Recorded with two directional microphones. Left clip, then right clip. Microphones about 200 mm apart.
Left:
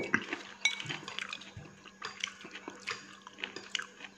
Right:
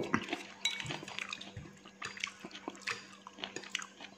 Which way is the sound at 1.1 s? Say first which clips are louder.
Left 1 dB; 15° right (ahead or behind).